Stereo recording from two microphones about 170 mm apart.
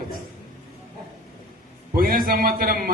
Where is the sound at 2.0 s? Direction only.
60° right (ahead or behind).